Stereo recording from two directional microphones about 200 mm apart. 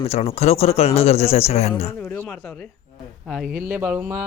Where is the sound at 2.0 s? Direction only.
10° left (ahead or behind).